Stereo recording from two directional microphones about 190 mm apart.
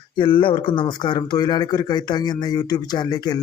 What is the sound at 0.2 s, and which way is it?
A man's voice, 25° left (ahead or behind).